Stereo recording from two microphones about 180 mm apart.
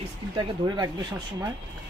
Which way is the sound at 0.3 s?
25° right (ahead or behind).